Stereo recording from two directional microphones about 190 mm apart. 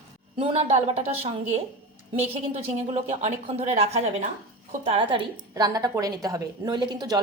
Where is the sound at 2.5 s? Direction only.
35° right (ahead or behind).